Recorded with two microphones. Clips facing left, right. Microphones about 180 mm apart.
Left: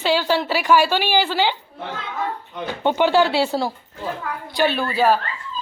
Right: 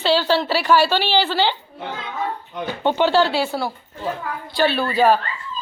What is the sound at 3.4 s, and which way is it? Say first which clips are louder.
Speech: left 2 dB; 35° left (ahead or behind).